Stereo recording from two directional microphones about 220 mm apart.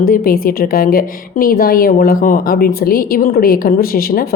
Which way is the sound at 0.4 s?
40° left (ahead or behind).